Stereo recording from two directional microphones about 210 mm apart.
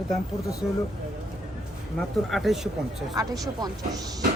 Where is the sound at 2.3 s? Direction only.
Centre (ahead or behind).